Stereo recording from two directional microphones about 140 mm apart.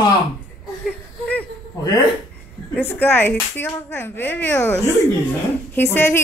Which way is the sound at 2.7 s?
15° left (ahead or behind).